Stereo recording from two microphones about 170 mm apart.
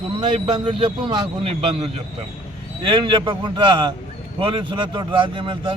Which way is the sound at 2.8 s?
30° right (ahead or behind).